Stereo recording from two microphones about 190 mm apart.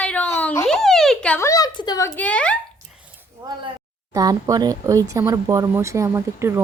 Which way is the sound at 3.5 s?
20° right (ahead or behind).